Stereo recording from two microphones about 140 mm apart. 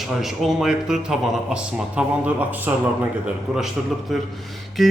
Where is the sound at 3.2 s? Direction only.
5° right (ahead or behind).